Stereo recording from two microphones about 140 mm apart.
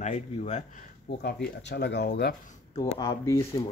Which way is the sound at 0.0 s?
55° left (ahead or behind).